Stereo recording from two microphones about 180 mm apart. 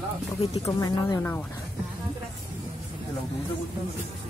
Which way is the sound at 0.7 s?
20° left (ahead or behind).